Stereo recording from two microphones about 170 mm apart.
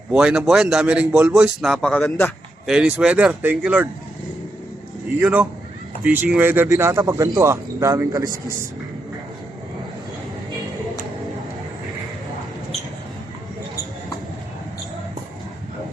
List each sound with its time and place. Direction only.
0.1 s a man's voice: 5° right (ahead or behind)
2.6 s a man's voice: 5° right (ahead or behind)
5.2 s speech: 10° right (ahead or behind)